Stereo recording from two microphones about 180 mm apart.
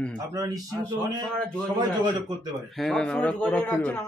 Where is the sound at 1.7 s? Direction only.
25° right (ahead or behind).